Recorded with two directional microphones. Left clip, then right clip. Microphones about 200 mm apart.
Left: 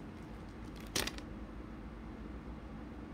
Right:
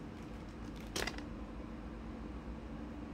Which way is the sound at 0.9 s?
55° left (ahead or behind).